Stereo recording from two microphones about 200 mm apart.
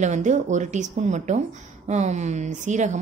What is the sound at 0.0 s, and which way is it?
Speech, 35° right (ahead or behind).